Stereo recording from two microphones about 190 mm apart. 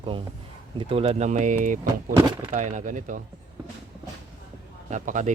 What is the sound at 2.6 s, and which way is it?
Speech, 40° right (ahead or behind).